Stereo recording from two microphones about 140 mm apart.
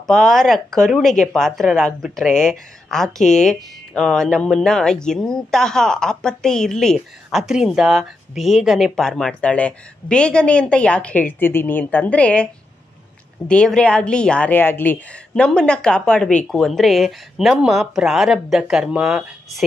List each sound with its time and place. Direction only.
0.0 s speech: centre (ahead or behind)
13.5 s speech: 5° left (ahead or behind)